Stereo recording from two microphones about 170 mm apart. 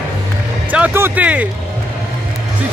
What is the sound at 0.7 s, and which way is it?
Music, 10° right (ahead or behind).